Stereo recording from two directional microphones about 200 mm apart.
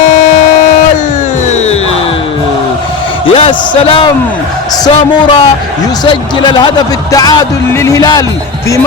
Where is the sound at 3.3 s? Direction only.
25° left (ahead or behind).